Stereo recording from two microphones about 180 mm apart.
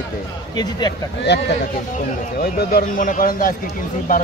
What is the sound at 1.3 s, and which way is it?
Speech, 75° left (ahead or behind).